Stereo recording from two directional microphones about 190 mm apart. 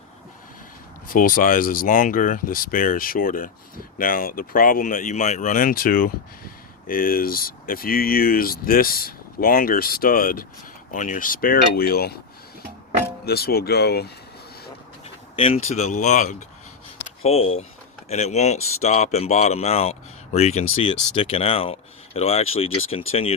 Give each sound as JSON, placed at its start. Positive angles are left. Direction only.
{"t": 1.0, "sound": "speech", "side_deg": 50}
{"t": 13.2, "sound": "speech", "side_deg": 55}
{"t": 15.4, "sound": "speech", "side_deg": 30}